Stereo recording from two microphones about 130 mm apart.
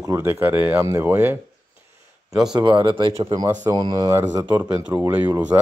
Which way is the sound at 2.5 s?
40° right (ahead or behind).